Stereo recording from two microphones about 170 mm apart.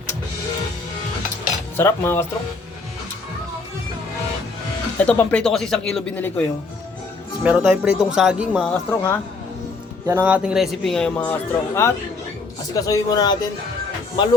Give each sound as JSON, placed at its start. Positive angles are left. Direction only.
{"t": 1.7, "sound": "cutlery", "side_deg": 15}
{"t": 4.9, "sound": "a man's voice", "side_deg": 10}
{"t": 7.4, "sound": "a man's voice", "side_deg": -5}
{"t": 8.9, "sound": "cutlery", "side_deg": 15}
{"t": 10.1, "sound": "a man's voice", "side_deg": -10}